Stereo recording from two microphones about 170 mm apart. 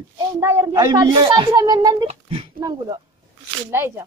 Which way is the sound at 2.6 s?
25° right (ahead or behind).